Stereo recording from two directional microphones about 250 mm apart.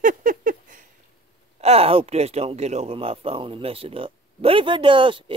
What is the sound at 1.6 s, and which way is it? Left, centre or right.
Speech, right.